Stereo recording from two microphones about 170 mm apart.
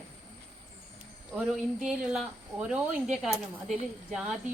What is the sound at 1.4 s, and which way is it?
Speech, 5° right (ahead or behind).